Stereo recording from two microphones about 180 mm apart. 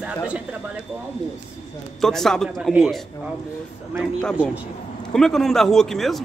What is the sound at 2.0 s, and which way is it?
Speech, centre (ahead or behind).